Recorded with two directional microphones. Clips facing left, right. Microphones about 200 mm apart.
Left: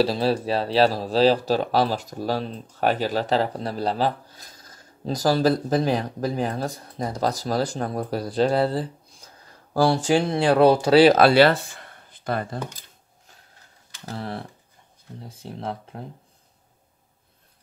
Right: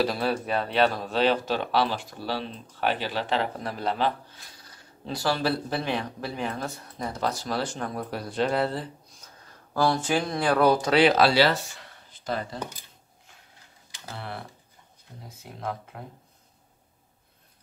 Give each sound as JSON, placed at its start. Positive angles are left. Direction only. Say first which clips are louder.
{"t": 0.0, "sound": "speech", "louder": "left 5 dB", "side_deg": 30}
{"t": 11.1, "sound": "speech", "louder": "left 5 dB", "side_deg": 55}
{"t": 14.1, "sound": "speech", "louder": "left 6 dB", "side_deg": 35}